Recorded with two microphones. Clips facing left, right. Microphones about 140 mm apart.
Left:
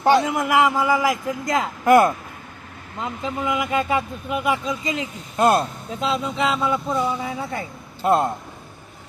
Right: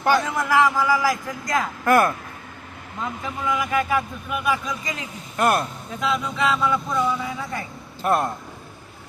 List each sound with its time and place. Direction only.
0.0 s speech: 25° left (ahead or behind)